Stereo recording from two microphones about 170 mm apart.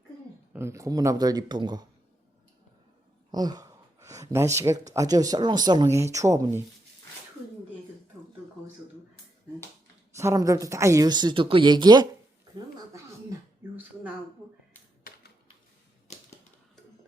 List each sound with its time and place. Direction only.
0.5 s a woman's voice: 15° right (ahead or behind)
3.3 s a woman's voice: 25° right (ahead or behind)
10.2 s a woman's voice: 20° right (ahead or behind)
12.5 s a sound: 20° right (ahead or behind)